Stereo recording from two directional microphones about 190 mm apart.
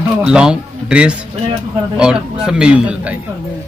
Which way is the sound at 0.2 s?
5° right (ahead or behind).